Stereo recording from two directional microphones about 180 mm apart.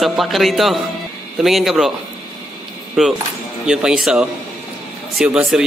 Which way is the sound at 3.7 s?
5° right (ahead or behind).